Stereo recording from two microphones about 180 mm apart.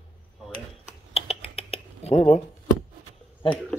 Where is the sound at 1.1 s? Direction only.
30° left (ahead or behind).